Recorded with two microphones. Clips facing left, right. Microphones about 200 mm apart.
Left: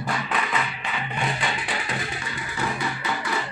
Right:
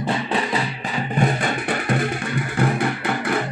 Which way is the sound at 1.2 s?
50° right (ahead or behind).